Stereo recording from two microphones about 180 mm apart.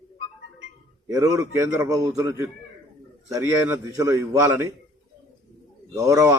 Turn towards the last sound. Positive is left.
turn(degrees=-20)  # may be behind; listen again after turning